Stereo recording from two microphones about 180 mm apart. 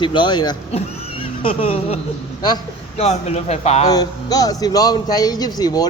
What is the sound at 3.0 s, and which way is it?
Speech, 40° left (ahead or behind).